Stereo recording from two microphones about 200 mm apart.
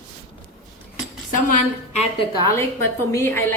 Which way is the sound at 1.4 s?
35° left (ahead or behind).